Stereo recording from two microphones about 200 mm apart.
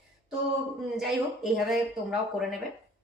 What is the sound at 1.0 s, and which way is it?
Speech, centre (ahead or behind).